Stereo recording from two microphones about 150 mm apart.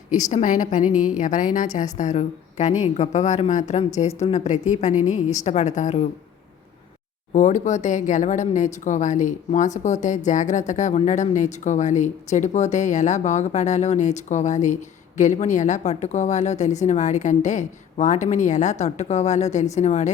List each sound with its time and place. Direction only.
0.1 s a woman's voice: 55° left (ahead or behind)
7.3 s speech: 55° left (ahead or behind)